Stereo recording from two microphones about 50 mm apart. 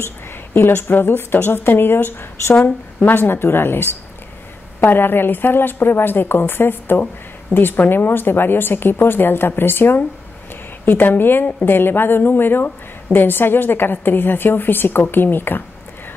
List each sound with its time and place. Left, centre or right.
0.6 s a woman's voice: left